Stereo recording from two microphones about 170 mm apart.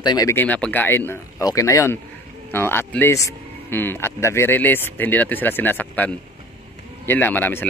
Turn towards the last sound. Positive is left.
turn(degrees=10)  # may be behind; listen again after turning